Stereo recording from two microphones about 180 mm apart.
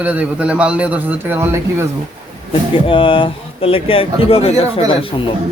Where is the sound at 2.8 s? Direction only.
30° left (ahead or behind).